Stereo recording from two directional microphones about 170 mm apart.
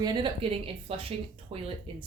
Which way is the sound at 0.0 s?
30° right (ahead or behind).